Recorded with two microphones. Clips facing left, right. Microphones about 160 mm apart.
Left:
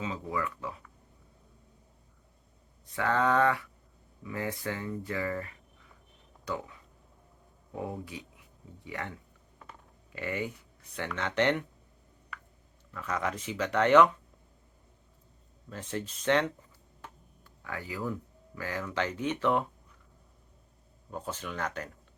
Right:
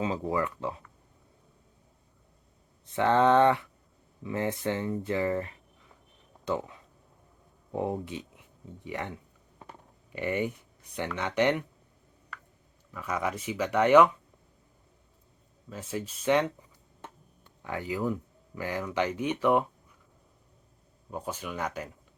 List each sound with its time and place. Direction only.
0.0 s speech: 35° right (ahead or behind)
2.8 s speech: 25° right (ahead or behind)
12.9 s speech: 10° right (ahead or behind)
15.7 s speech: 5° right (ahead or behind)
17.0 s speech: 25° right (ahead or behind)
21.1 s speech: 10° right (ahead or behind)